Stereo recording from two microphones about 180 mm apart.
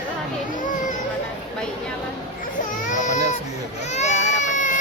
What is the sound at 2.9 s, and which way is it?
Speech, 40° left (ahead or behind).